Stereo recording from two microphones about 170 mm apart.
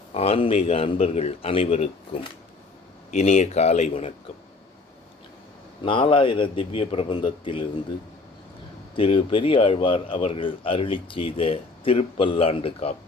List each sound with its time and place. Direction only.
0.1 s speech: 35° left (ahead or behind)
5.8 s speech: 30° left (ahead or behind)
9.0 s speech: 30° left (ahead or behind)